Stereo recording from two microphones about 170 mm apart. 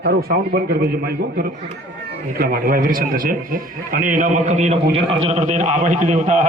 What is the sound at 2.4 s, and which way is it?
A man's voice, 60° right (ahead or behind).